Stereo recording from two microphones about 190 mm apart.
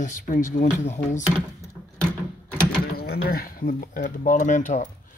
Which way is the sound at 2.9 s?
50° left (ahead or behind).